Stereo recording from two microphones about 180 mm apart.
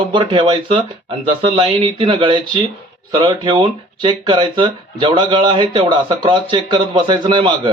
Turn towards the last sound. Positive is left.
turn(degrees=-25)  # may be behind; listen again after turning